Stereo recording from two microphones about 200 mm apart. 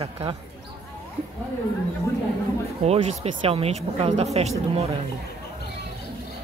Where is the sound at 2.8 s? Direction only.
30° right (ahead or behind).